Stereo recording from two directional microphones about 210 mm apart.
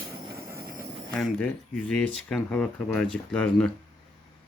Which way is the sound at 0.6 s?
45° right (ahead or behind).